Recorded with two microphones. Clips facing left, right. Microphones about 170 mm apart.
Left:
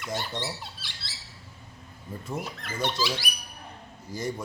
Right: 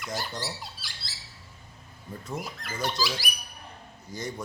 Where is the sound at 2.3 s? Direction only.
Centre (ahead or behind).